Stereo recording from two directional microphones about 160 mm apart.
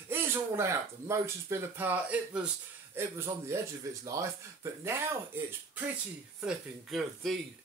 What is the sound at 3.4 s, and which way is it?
Speech, 20° right (ahead or behind).